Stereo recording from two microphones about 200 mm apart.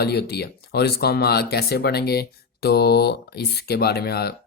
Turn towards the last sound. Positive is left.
turn(degrees=50)  # may be behind; listen again after turning